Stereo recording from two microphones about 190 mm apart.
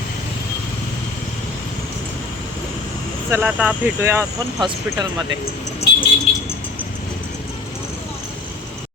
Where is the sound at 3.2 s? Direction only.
10° right (ahead or behind).